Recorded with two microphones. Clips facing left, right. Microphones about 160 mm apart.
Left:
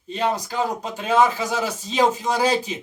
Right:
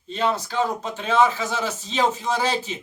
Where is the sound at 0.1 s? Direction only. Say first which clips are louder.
Even; 15° left (ahead or behind).